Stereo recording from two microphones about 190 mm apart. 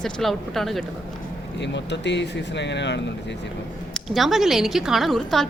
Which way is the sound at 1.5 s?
65° left (ahead or behind).